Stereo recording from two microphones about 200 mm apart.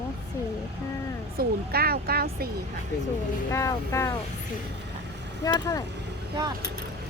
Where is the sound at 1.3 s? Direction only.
50° right (ahead or behind).